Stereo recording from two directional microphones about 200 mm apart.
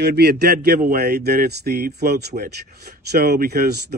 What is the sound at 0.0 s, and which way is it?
Speech, 55° right (ahead or behind).